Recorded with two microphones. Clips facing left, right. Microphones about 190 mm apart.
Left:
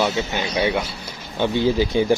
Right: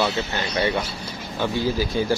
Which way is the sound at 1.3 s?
20° left (ahead or behind).